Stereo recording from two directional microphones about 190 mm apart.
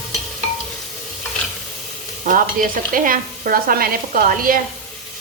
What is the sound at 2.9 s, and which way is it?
Speech, 45° right (ahead or behind).